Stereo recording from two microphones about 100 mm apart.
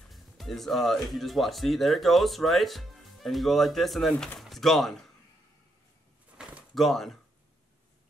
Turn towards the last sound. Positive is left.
turn(degrees=0)  # may be behind; listen again after turning